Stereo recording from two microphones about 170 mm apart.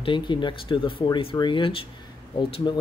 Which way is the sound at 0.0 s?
30° left (ahead or behind).